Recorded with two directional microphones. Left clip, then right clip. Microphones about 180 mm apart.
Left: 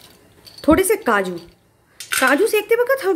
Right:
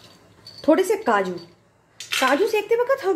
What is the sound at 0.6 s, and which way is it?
A woman's voice, 25° left (ahead or behind).